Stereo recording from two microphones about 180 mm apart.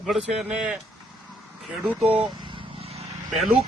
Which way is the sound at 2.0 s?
5° right (ahead or behind).